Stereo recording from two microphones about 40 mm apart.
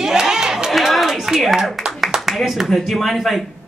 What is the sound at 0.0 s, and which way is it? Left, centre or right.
Chatter, centre.